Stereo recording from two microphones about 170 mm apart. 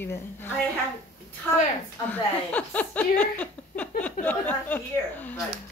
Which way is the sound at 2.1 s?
10° left (ahead or behind).